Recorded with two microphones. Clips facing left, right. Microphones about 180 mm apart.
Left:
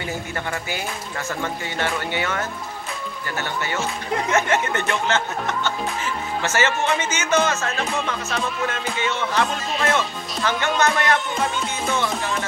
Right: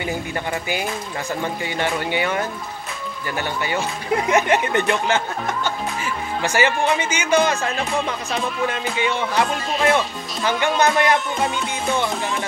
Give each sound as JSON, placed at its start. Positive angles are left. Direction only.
{"t": 0.0, "sound": "speech", "side_deg": -15}